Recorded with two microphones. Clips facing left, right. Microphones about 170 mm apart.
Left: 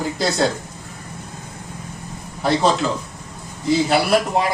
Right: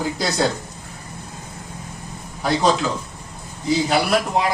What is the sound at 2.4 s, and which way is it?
A man's voice, centre (ahead or behind).